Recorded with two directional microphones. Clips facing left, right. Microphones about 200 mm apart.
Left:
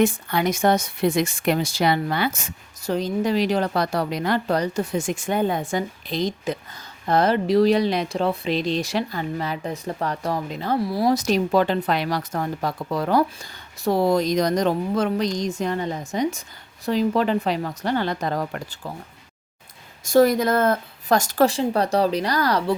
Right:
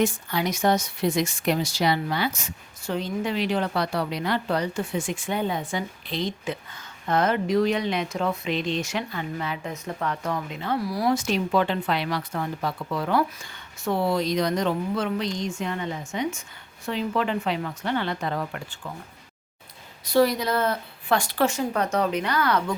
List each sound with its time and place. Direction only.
0.0 s speech: 55° left (ahead or behind); by 18.8 s 40° left (ahead or behind)
20.1 s speech: 45° left (ahead or behind)